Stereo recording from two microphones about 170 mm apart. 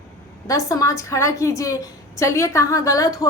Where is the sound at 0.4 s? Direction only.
20° left (ahead or behind).